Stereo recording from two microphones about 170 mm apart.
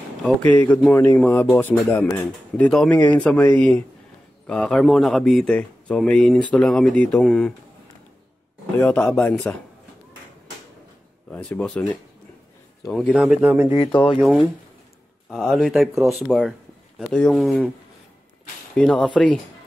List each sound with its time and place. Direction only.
0.2 s speech: 10° left (ahead or behind)
8.7 s speech: 10° left (ahead or behind)
11.2 s speech: 10° left (ahead or behind); by 13.7 s 10° right (ahead or behind)
13.7 s speech: 30° left (ahead or behind)
15.2 s speech: centre (ahead or behind)
18.8 s speech: centre (ahead or behind)